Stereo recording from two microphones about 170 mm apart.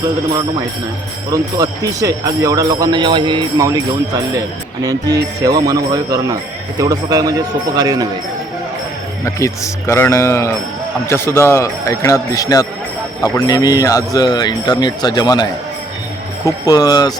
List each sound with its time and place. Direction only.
1.3 s speech: 20° right (ahead or behind)
9.2 s a man's voice: 15° left (ahead or behind)
16.6 s speech: 20° left (ahead or behind)